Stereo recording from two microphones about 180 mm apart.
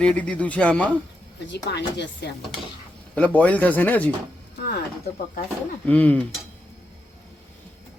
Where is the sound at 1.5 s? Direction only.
70° left (ahead or behind).